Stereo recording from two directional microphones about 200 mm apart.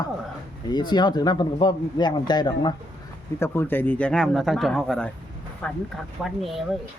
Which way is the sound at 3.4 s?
10° left (ahead or behind).